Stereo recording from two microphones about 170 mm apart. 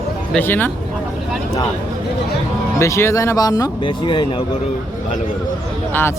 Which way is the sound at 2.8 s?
15° left (ahead or behind).